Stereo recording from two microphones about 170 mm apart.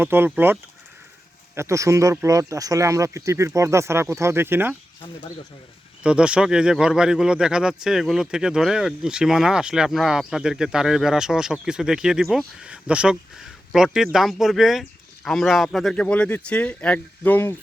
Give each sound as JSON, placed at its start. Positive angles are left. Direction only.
{"t": 0.0, "sound": "speech", "side_deg": -15}
{"t": 6.0, "sound": "speech", "side_deg": -5}